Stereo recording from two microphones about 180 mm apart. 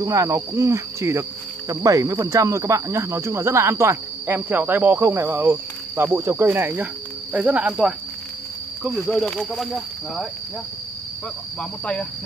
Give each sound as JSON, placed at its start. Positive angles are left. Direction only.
{"t": 0.0, "sound": "speech", "side_deg": -20}
{"t": 9.0, "sound": "speech", "side_deg": 5}
{"t": 11.8, "sound": "speech", "side_deg": 5}